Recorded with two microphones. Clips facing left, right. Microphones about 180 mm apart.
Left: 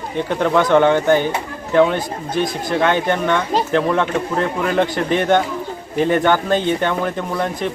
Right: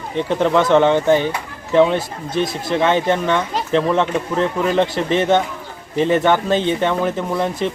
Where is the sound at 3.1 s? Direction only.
Centre (ahead or behind).